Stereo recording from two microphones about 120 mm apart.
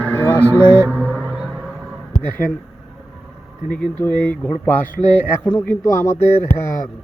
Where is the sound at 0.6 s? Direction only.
20° right (ahead or behind).